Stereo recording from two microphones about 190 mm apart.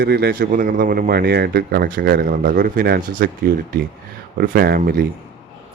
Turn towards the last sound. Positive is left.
turn(degrees=-50)  # may be behind; listen again after turning